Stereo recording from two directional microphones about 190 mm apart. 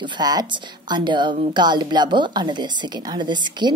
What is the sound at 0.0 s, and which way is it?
A woman's voice, 25° right (ahead or behind).